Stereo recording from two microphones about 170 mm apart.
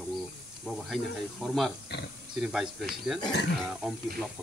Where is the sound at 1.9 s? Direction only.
85° left.